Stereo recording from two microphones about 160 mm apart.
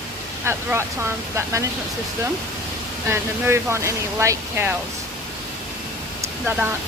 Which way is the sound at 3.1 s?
15° right (ahead or behind).